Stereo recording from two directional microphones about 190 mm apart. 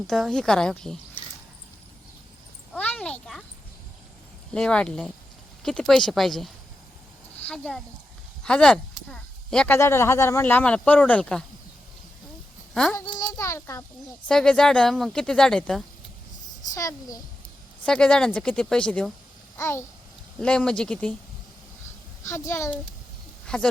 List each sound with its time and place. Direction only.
0.1 s a woman's voice: 5° left (ahead or behind)
2.7 s a sound: 5° left (ahead or behind)
4.5 s a woman's voice: 5° left (ahead or behind)
12.7 s speech: 5° left (ahead or behind)
13.0 s a child's voice: 20° left (ahead or behind)
14.3 s a woman's voice: 5° left (ahead or behind)
16.7 s speech: 15° left (ahead or behind)
17.8 s a woman's voice: 5° left (ahead or behind)
19.5 s babbling: 15° left (ahead or behind)
20.4 s a woman's voice: 5° left (ahead or behind)
22.2 s a woman's voice: 15° left (ahead or behind)